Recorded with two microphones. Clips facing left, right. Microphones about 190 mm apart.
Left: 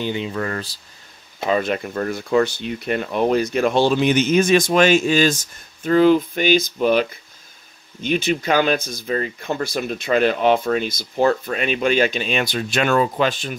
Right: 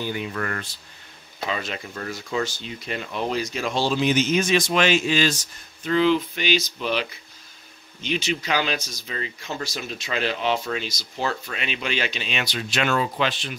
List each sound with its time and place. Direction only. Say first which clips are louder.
0.0 s speech: left 4 dB; 20° left (ahead or behind)
1.4 s speech: left 9 dB; 50° left (ahead or behind)